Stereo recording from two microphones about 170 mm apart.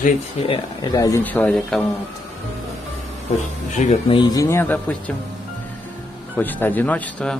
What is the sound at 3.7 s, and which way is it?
Speech, 45° left (ahead or behind).